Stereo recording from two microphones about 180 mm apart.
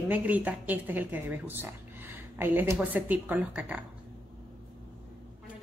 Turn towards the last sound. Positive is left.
turn(degrees=-5)  # may be behind; listen again after turning